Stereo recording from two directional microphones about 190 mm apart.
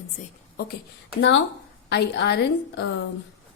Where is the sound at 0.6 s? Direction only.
60° left (ahead or behind).